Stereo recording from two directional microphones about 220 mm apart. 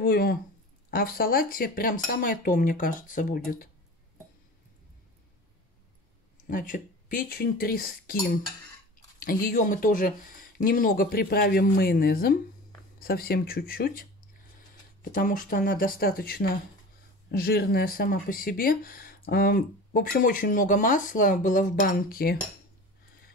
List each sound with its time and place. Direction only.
0.0 s speech: 45° left (ahead or behind)
6.5 s speech: 35° left (ahead or behind)
9.2 s speech: 40° left (ahead or behind)